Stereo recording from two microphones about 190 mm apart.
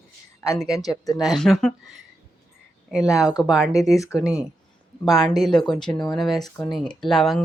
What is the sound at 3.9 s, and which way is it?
Speech, 15° left (ahead or behind).